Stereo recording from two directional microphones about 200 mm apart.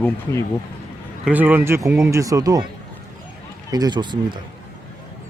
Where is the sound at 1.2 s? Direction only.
10° right (ahead or behind).